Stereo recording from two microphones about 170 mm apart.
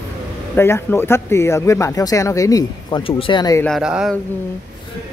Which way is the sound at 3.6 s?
Centre (ahead or behind).